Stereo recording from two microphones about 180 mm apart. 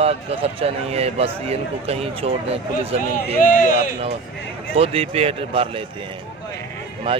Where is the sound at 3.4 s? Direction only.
50° left (ahead or behind).